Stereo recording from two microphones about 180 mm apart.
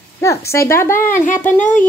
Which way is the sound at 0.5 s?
15° left (ahead or behind).